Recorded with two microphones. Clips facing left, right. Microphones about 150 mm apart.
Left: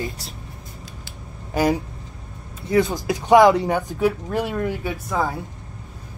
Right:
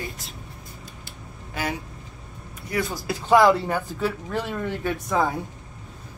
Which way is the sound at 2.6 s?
20° left (ahead or behind).